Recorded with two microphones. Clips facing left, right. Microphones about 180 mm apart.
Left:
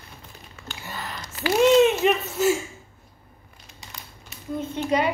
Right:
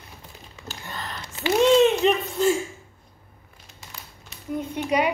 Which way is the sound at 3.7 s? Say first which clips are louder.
Even; centre (ahead or behind).